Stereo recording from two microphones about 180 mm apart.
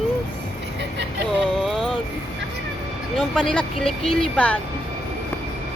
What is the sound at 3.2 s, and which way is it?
Speech, 5° left (ahead or behind).